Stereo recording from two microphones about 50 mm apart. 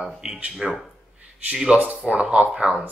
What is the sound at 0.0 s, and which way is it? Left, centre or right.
Speech, centre.